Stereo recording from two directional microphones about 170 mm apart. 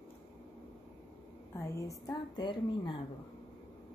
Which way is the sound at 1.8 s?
20° left (ahead or behind).